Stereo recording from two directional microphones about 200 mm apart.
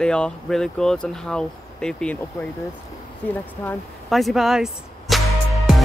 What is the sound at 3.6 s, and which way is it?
Music, centre (ahead or behind).